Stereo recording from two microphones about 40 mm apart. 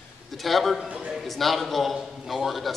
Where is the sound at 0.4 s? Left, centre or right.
Centre.